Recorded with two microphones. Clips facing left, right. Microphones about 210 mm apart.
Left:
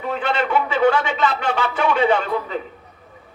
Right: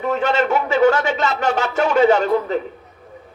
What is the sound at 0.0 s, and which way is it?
A man's voice, 45° right (ahead or behind).